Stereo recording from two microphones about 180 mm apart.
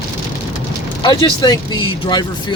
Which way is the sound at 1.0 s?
25° left (ahead or behind).